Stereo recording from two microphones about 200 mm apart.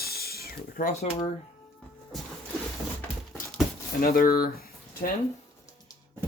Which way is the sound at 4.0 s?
45° left (ahead or behind).